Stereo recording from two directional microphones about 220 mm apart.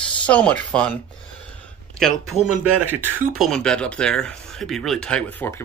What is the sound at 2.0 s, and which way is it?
Speech, 5° left (ahead or behind).